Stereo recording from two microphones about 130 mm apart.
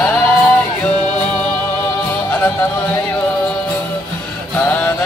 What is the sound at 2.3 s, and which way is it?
Music, 15° left (ahead or behind).